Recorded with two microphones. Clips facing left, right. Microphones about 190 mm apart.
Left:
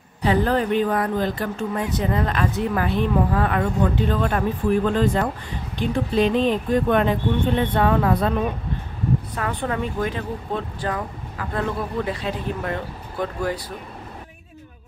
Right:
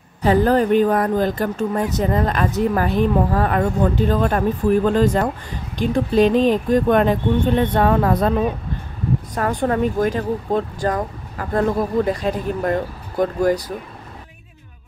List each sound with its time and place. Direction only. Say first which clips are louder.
0.2 s speech: right 4 dB; 40° right (ahead or behind)
9.3 s speech: right 6 dB; 40° right (ahead or behind)